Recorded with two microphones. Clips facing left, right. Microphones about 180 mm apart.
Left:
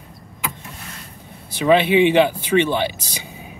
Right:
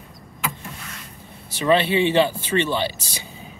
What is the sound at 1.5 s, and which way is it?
Speech, 15° left (ahead or behind).